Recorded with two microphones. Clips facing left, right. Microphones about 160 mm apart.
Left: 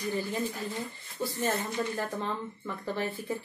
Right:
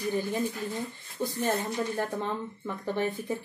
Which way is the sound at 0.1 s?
15° right (ahead or behind).